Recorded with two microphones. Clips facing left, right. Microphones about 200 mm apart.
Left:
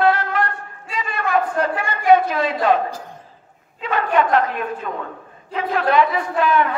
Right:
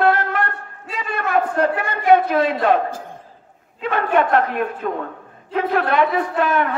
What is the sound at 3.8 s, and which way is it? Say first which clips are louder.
A woman's voice: right 1 dB; 55° right (ahead or behind).